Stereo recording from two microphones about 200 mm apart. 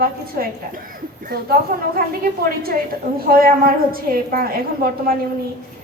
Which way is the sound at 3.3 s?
45° right (ahead or behind).